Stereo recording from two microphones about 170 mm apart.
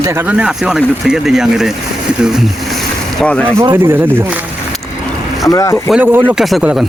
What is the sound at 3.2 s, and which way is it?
Speech, 5° left (ahead or behind).